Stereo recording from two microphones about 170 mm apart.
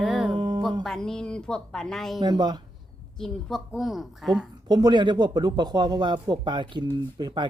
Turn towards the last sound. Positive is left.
turn(degrees=-25)  # may be behind; listen again after turning